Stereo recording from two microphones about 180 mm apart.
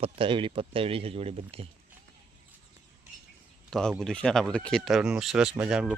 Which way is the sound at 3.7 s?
5° left (ahead or behind).